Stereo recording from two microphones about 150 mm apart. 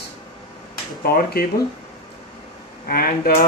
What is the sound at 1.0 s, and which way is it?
Speech, 90° left.